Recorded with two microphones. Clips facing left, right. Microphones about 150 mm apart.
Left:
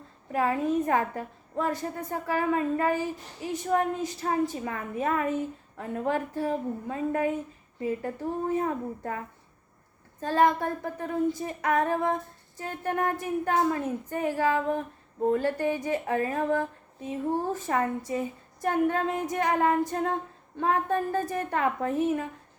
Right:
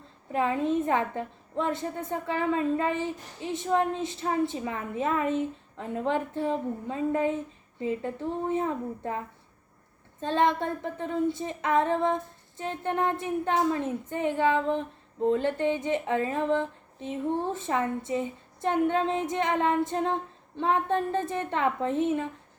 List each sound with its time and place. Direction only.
0.3 s a woman's voice: 20° right (ahead or behind)
10.2 s a woman's voice: 25° right (ahead or behind)